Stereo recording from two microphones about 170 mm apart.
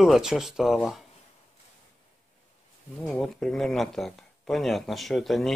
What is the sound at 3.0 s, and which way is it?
Speech, 5° left (ahead or behind).